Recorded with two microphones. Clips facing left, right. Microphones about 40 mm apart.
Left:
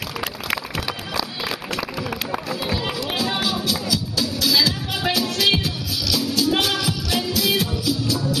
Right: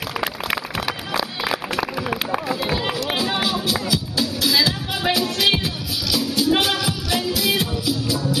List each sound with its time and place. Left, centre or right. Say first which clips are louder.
0.5 s music: right 1 dB; centre
2.0 s run: right 3 dB; centre
6.1 s music: right 2 dB; centre